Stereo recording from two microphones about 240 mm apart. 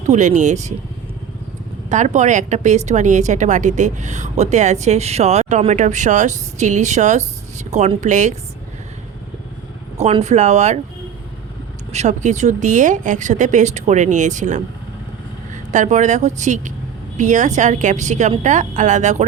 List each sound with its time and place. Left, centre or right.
0.1 s speech: right
1.9 s a woman's voice: right
10.0 s a woman's voice: right
11.9 s speech: right
15.7 s a woman's voice: right